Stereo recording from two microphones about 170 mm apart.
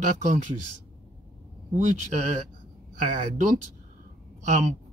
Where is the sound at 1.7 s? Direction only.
45° right (ahead or behind).